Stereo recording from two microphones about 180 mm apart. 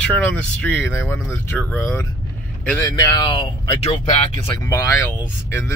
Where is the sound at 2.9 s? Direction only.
25° left (ahead or behind).